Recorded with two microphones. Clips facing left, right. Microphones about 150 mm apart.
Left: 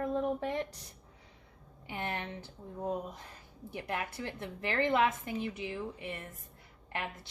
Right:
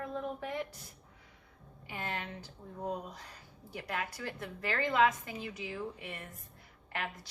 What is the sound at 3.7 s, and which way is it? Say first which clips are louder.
A woman's voice: left 1 dB; 20° left (ahead or behind).